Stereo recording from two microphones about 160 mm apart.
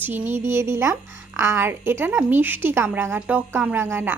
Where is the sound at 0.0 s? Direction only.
15° right (ahead or behind).